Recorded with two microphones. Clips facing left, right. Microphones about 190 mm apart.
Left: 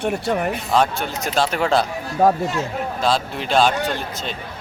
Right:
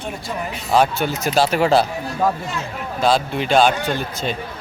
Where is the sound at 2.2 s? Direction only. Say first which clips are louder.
Left 4 dB; 45° left (ahead or behind).